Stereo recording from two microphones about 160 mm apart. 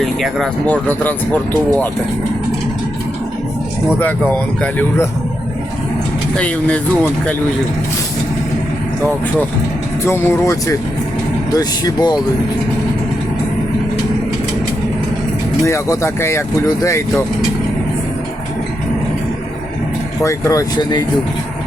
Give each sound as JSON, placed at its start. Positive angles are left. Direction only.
{"t": 0.0, "sound": "speech", "side_deg": 0}
{"t": 4.3, "sound": "speech", "side_deg": 10}
{"t": 6.3, "sound": "speech", "side_deg": 10}
{"t": 10.0, "sound": "speech", "side_deg": 15}
{"t": 15.6, "sound": "speech", "side_deg": 15}
{"t": 20.2, "sound": "speech", "side_deg": 20}